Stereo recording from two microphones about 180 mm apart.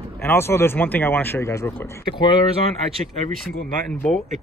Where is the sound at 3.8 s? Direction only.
5° left (ahead or behind).